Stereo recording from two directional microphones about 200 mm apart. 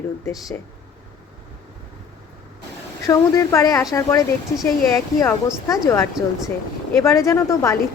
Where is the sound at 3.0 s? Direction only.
15° left (ahead or behind).